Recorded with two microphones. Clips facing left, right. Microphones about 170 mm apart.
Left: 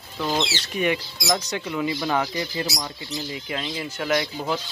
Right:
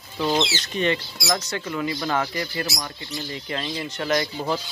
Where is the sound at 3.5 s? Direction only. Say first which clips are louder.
Right 2 dB; 5° left (ahead or behind).